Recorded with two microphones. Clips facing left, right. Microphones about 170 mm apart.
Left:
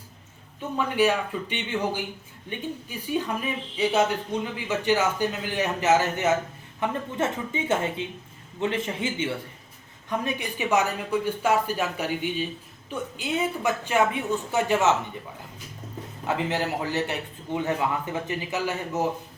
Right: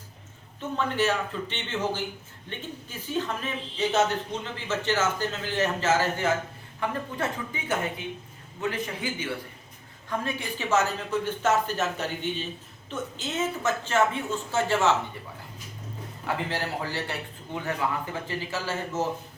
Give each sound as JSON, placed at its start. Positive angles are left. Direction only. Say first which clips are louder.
{"t": 0.8, "sound": "a man's voice", "louder": "left 3 dB", "side_deg": 10}
{"t": 16.2, "sound": "a man's voice", "louder": "left 4 dB", "side_deg": 20}